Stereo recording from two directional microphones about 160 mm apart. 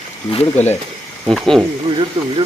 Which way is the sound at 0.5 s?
15° left (ahead or behind).